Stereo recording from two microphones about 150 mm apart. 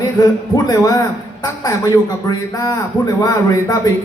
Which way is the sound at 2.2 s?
25° left (ahead or behind).